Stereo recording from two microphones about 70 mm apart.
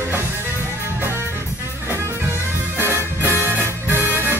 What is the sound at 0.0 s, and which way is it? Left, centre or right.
Music, right.